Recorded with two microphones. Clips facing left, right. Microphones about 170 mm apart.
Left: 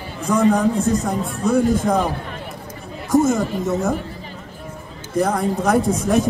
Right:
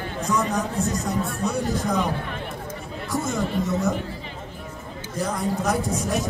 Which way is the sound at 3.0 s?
45° left (ahead or behind).